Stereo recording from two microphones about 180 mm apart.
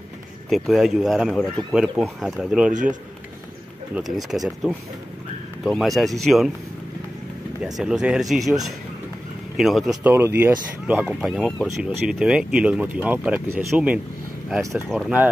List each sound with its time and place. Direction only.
0.5 s speech: centre (ahead or behind)
2.7 s speech: 45° right (ahead or behind)
3.9 s speech: centre (ahead or behind)
7.6 s speech: 5° right (ahead or behind)
10.1 s speech: 15° right (ahead or behind)
14.9 s speech: centre (ahead or behind)